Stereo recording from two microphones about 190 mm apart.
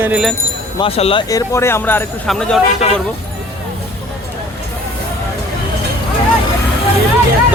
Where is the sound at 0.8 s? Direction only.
30° left (ahead or behind).